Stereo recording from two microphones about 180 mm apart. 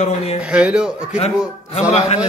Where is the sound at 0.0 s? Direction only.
35° left (ahead or behind).